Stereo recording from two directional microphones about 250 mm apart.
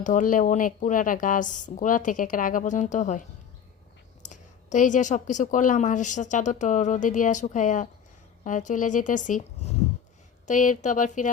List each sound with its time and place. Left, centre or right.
0.0 s a woman's voice: left